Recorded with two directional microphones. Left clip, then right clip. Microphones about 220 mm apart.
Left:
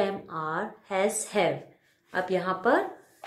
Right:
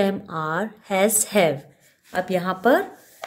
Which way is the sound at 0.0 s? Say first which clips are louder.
Right 5 dB; 45° right (ahead or behind).